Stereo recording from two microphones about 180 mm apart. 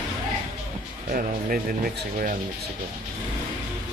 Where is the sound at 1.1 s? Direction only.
50° right (ahead or behind).